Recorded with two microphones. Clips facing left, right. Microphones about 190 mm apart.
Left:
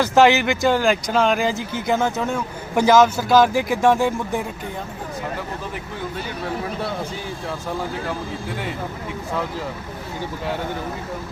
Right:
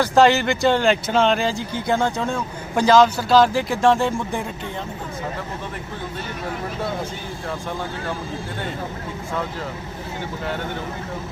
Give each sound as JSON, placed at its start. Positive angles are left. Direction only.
{"t": 0.1, "sound": "speech", "side_deg": 15}
{"t": 0.6, "sound": "speech", "side_deg": 5}